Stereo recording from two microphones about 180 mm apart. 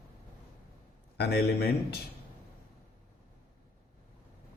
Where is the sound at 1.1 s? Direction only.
65° left (ahead or behind).